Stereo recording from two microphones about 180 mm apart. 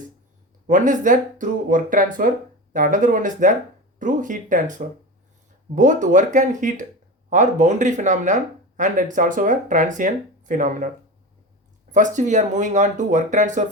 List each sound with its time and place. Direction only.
0.7 s speech: 45° right (ahead or behind)
11.9 s speech: 45° right (ahead or behind)